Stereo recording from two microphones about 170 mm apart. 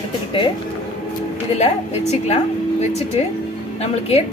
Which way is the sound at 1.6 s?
40° left (ahead or behind).